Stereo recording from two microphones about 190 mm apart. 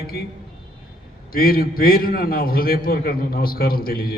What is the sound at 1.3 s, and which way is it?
A man's voice, 50° left (ahead or behind).